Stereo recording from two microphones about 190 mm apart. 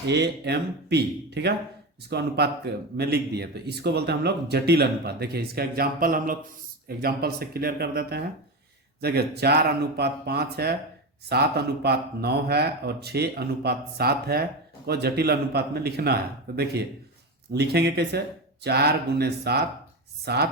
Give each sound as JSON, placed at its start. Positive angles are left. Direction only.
{"t": 0.0, "sound": "a man's voice", "side_deg": -60}